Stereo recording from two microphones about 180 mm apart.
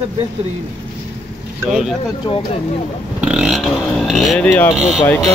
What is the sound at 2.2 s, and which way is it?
Speech, 25° left (ahead or behind).